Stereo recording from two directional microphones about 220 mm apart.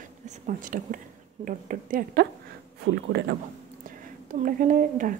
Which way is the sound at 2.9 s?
55° right (ahead or behind).